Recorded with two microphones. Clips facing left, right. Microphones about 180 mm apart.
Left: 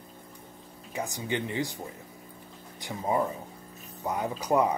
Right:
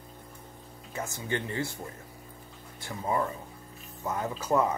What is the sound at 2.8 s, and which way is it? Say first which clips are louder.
Speech: left 2 dB; 20° left (ahead or behind).